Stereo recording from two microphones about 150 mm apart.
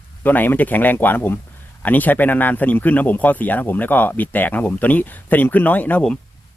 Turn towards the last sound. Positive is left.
turn(degrees=10)  # may be behind; listen again after turning